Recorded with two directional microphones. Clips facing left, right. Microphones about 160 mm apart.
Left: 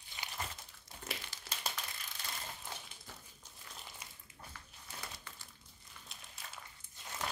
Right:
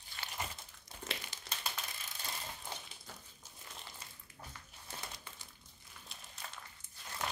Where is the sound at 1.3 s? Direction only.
20° right (ahead or behind).